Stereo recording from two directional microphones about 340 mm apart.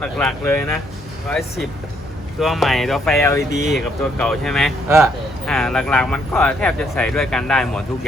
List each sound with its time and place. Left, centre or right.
0.0 s speech: centre